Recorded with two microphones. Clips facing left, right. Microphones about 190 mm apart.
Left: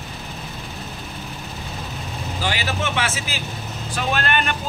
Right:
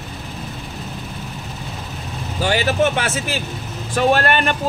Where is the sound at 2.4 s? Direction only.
45° right (ahead or behind).